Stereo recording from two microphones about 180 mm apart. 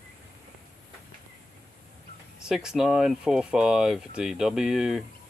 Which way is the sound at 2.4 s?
5° right (ahead or behind).